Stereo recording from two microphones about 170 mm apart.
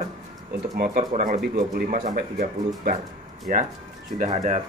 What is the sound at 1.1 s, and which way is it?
A man's voice, 45° right (ahead or behind).